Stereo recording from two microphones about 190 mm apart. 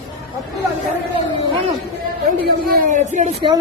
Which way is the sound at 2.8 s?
40° right (ahead or behind).